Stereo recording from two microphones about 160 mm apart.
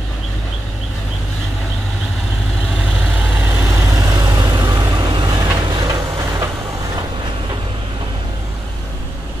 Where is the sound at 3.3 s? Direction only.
15° right (ahead or behind).